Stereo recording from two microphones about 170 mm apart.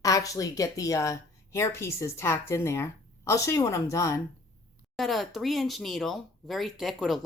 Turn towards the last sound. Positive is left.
turn(degrees=0)  # may be behind; listen again after turning